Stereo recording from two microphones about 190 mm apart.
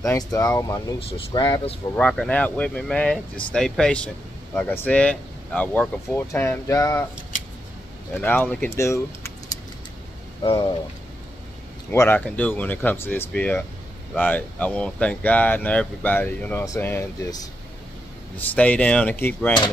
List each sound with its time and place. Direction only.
0.0 s speech: 15° left (ahead or behind)
2.0 s speech: 5° left (ahead or behind)
8.2 s speech: 10° left (ahead or behind)
10.4 s speech: 25° left (ahead or behind)
11.9 s speech: 10° left (ahead or behind)
18.5 s speech: 5° left (ahead or behind)